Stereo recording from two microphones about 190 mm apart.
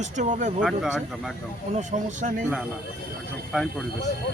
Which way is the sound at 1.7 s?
40° right (ahead or behind).